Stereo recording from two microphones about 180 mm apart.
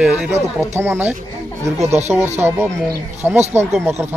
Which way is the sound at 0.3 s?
15° right (ahead or behind).